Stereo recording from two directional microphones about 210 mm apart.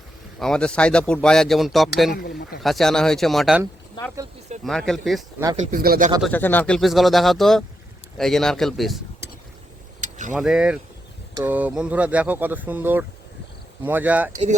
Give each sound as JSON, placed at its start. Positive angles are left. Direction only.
{"t": 0.3, "sound": "speech", "side_deg": 5}
{"t": 4.6, "sound": "speech", "side_deg": 0}
{"t": 5.7, "sound": "speech", "side_deg": -45}
{"t": 6.2, "sound": "speech", "side_deg": 10}
{"t": 10.0, "sound": "vehicle", "side_deg": -35}
{"t": 10.3, "sound": "speech", "side_deg": -5}